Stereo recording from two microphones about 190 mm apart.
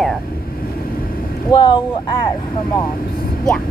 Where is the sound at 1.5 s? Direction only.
25° left (ahead or behind).